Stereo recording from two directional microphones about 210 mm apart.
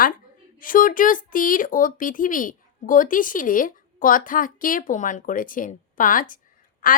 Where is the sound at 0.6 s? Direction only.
40° left (ahead or behind).